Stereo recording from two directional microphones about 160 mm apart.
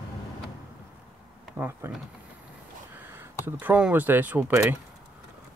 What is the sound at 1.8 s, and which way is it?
Speech, 15° right (ahead or behind).